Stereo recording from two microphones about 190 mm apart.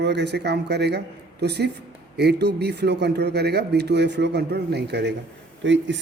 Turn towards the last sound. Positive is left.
turn(degrees=-70)  # may be behind; listen again after turning